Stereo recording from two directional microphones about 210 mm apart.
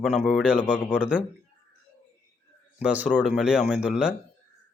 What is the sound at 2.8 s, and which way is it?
Speech, 5° right (ahead or behind).